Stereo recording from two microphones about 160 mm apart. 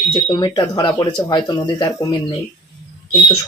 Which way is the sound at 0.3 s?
30° left (ahead or behind).